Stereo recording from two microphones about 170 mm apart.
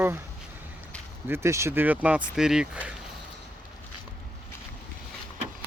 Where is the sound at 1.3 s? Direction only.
15° right (ahead or behind).